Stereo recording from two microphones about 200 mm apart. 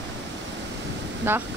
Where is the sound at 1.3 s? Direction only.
10° right (ahead or behind).